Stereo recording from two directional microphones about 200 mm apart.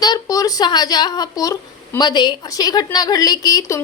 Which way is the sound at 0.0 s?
20° left (ahead or behind).